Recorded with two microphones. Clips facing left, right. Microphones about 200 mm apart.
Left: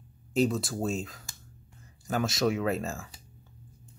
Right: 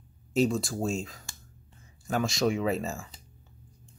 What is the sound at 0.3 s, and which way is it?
Speech, centre (ahead or behind).